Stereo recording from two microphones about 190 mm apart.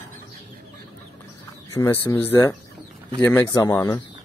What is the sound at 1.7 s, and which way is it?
Speech, 15° left (ahead or behind).